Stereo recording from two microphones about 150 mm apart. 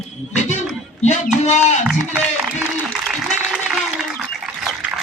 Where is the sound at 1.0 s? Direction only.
50° left (ahead or behind).